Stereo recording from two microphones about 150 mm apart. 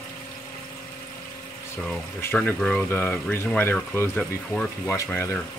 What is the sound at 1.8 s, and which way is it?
Speech, 5° left (ahead or behind).